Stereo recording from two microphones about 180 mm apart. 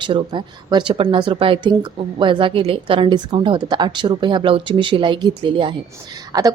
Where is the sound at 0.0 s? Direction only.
25° right (ahead or behind).